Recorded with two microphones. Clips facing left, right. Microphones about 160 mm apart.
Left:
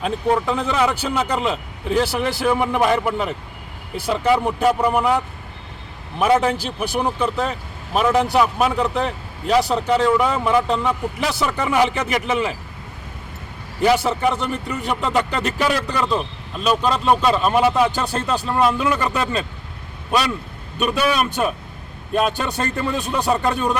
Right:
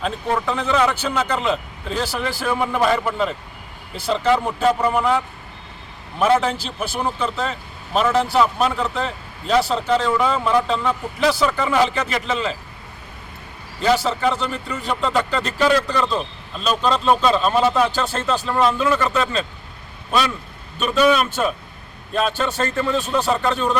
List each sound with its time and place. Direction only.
0.0 s a man's voice: 10° left (ahead or behind)
13.8 s a man's voice: 15° left (ahead or behind)
20.7 s a man's voice: 10° left (ahead or behind)